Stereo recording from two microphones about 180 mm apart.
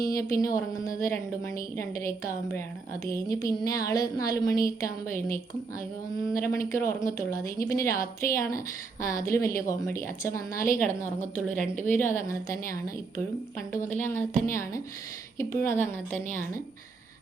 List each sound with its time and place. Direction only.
0.1 s speech: 20° left (ahead or behind)
3.6 s a sound: 20° left (ahead or behind)
6.3 s speech: 15° left (ahead or behind)
13.7 s speech: 15° left (ahead or behind)